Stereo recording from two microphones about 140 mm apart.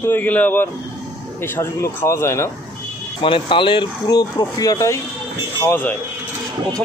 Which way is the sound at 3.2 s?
35° left (ahead or behind).